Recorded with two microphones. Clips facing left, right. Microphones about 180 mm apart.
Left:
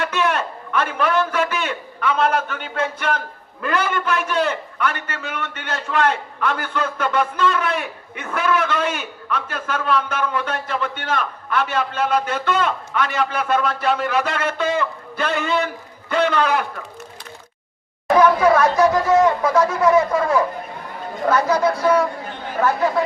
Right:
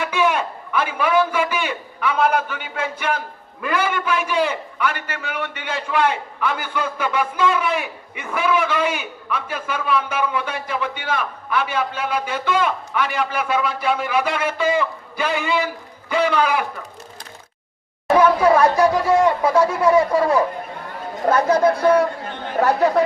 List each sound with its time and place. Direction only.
0.0 s a man's voice: 10° right (ahead or behind)
18.1 s a man's voice: 10° right (ahead or behind)
21.2 s speech: 35° right (ahead or behind)
21.6 s speech: 55° right (ahead or behind)
22.6 s speech: 40° right (ahead or behind)